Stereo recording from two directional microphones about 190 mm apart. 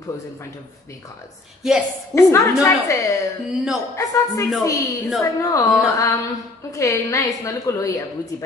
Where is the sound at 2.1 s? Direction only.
15° left (ahead or behind).